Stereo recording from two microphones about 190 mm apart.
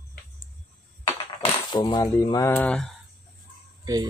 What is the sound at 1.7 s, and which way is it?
Speech, 25° left (ahead or behind).